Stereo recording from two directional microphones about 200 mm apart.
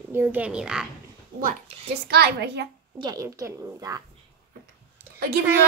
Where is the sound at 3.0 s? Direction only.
15° right (ahead or behind).